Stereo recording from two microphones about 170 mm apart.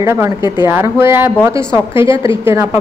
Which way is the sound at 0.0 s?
15° right (ahead or behind).